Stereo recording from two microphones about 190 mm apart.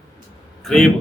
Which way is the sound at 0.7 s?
5° left (ahead or behind).